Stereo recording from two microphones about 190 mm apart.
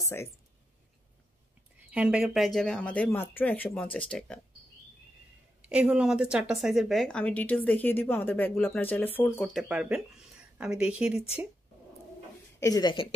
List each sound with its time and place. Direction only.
0.0 s speech: 15° left (ahead or behind)
1.9 s a woman's voice: 5° right (ahead or behind)
5.6 s a woman's voice: 5° right (ahead or behind)
12.5 s speech: 20° left (ahead or behind)